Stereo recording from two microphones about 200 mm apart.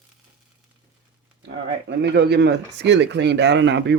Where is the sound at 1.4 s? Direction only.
55° right (ahead or behind).